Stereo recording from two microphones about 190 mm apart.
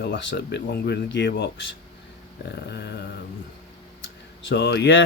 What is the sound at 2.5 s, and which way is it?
Speech, 60° left (ahead or behind).